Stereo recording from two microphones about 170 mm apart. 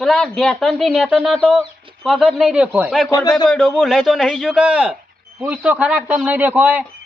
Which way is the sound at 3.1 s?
20° left (ahead or behind).